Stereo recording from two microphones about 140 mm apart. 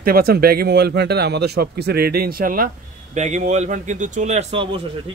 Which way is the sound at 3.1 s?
55° right (ahead or behind).